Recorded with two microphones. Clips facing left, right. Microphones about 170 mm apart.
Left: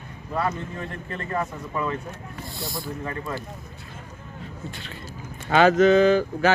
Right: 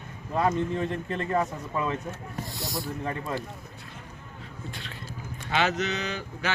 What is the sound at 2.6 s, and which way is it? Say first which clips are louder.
Speech: left 1 dB; 40° right (ahead or behind).